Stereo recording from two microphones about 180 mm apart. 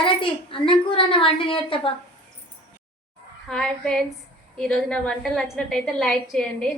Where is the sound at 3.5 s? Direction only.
5° left (ahead or behind).